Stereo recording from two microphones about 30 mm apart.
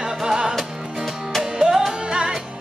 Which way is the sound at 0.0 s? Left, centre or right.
Right.